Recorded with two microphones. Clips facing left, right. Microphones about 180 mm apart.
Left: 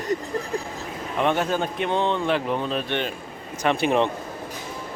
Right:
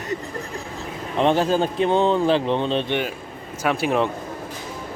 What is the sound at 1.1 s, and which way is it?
A man's voice, 30° right (ahead or behind).